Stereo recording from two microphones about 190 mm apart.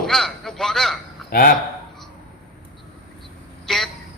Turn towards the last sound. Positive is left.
turn(degrees=0)  # may be behind; listen again after turning